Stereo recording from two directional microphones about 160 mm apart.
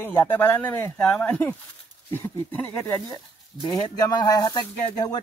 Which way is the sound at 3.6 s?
25° left (ahead or behind).